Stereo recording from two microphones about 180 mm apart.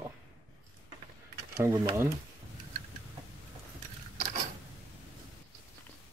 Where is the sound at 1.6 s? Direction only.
15° right (ahead or behind).